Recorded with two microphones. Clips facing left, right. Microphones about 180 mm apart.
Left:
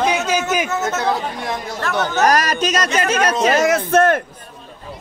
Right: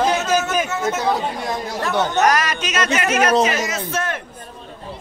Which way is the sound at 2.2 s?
40° left (ahead or behind).